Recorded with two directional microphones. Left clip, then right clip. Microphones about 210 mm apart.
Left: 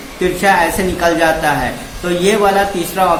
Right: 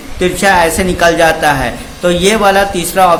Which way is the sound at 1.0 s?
55° right (ahead or behind).